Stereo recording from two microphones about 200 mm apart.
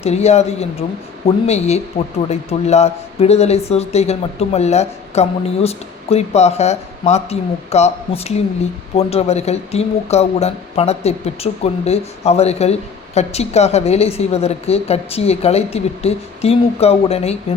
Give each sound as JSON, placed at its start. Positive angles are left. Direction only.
{"t": 0.0, "sound": "speech", "side_deg": 30}